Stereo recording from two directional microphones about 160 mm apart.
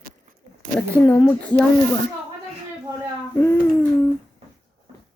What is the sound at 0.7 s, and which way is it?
Speech, 10° left (ahead or behind).